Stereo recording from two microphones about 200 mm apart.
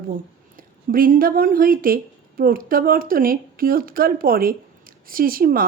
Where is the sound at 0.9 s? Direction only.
45° right (ahead or behind).